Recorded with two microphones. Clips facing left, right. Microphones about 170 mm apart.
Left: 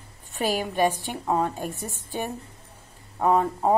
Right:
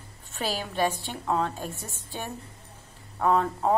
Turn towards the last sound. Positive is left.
turn(degrees=15)  # may be behind; listen again after turning